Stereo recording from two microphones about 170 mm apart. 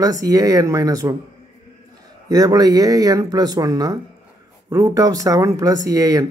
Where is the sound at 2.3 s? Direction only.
20° right (ahead or behind).